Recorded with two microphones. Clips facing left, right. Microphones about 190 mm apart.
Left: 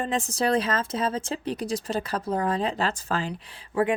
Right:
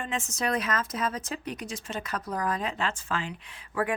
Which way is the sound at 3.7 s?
25° left (ahead or behind).